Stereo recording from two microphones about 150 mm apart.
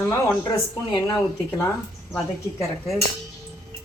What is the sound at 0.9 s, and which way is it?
Speech, 20° left (ahead or behind).